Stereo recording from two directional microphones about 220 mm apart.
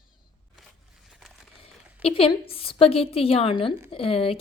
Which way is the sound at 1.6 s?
25° left (ahead or behind).